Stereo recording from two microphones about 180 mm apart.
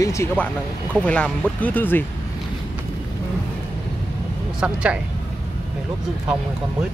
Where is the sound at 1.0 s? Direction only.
5° left (ahead or behind).